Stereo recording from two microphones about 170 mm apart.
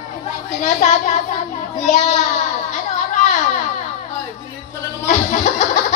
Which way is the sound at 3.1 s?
45° left (ahead or behind).